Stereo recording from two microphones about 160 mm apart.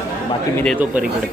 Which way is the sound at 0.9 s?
10° right (ahead or behind).